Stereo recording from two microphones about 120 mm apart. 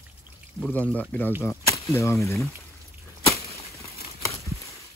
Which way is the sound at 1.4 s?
25° left (ahead or behind).